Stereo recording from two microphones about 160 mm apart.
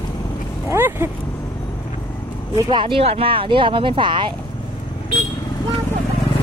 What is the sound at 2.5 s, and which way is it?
Speech, 30° right (ahead or behind).